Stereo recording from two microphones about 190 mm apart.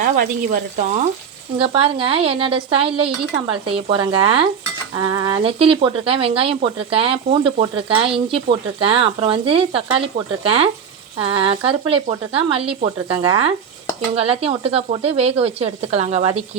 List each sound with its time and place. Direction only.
0.0 s speech: 45° right (ahead or behind)
1.5 s speech: 30° right (ahead or behind)